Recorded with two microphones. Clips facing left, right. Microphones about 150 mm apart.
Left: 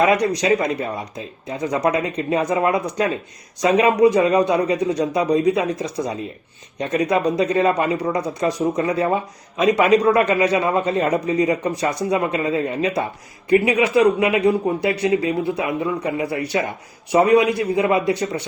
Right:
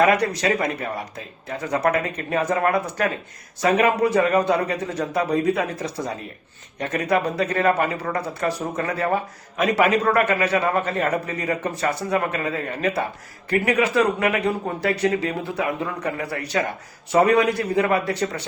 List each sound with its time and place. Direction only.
0.2 s speech: 20° left (ahead or behind)